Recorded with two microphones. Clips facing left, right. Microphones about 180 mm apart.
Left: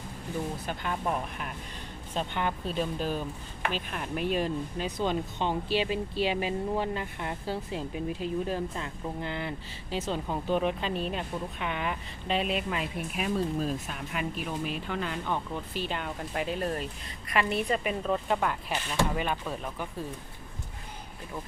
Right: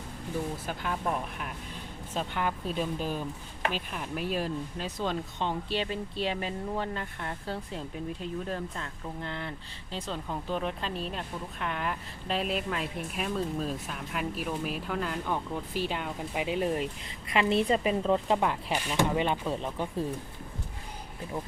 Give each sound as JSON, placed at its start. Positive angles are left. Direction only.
{"t": 0.7, "sound": "a woman's voice", "side_deg": 0}